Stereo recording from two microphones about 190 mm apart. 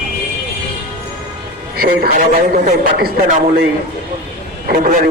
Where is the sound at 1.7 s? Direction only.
50° right (ahead or behind).